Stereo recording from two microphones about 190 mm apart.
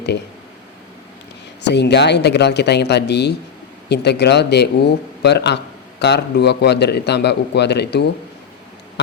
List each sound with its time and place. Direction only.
1.6 s a man's voice: 65° left (ahead or behind)